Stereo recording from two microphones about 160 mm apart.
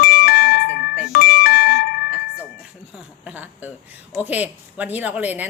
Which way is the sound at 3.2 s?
10° right (ahead or behind).